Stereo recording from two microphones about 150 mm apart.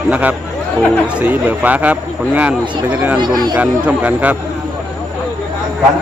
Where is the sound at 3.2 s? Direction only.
30° right (ahead or behind).